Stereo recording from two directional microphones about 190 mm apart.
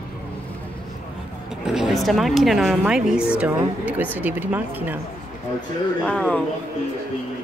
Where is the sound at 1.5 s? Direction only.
Centre (ahead or behind).